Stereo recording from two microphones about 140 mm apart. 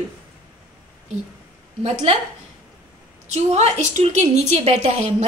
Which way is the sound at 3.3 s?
50° right (ahead or behind).